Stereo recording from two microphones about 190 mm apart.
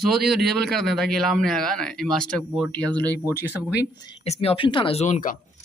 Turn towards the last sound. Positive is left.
turn(degrees=40)  # may be behind; listen again after turning